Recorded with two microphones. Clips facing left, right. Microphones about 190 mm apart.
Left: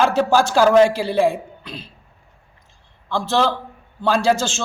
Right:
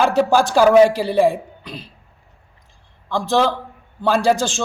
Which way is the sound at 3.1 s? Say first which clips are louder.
Right 2 dB; 15° right (ahead or behind).